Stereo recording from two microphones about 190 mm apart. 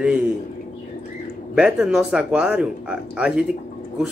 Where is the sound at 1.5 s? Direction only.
5° right (ahead or behind).